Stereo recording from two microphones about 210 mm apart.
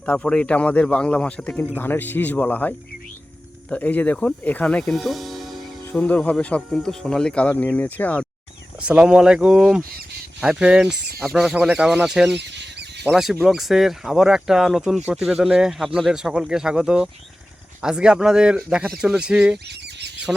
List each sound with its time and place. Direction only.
0.0 s speech: 5° left (ahead or behind)
8.8 s speech: 5° right (ahead or behind)
12.4 s a sound: 55° right (ahead or behind)
13.1 s speech: centre (ahead or behind)